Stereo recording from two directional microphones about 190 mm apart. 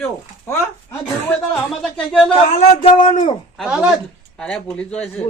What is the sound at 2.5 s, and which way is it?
Speech, 30° left (ahead or behind).